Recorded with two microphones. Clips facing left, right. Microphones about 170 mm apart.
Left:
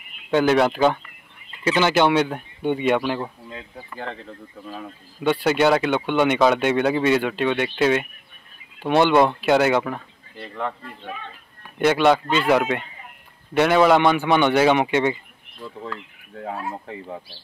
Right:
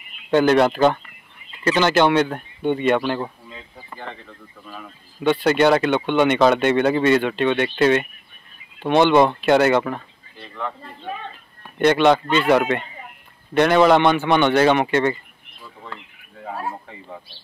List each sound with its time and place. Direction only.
0.3 s speech: 5° left (ahead or behind)
4.3 s speech: 30° left (ahead or behind)
5.2 s speech: 5° left (ahead or behind)
11.8 s speech: 5° left (ahead or behind)